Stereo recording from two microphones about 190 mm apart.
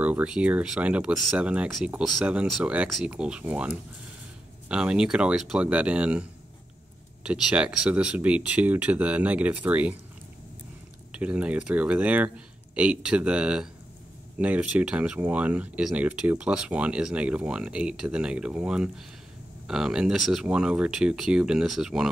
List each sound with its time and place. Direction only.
0.0 s speech: 5° right (ahead or behind)
7.2 s speech: 5° right (ahead or behind)
11.1 s speech: 5° right (ahead or behind)